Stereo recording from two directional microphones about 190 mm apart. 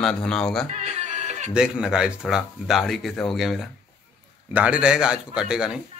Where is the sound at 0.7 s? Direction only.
35° right (ahead or behind).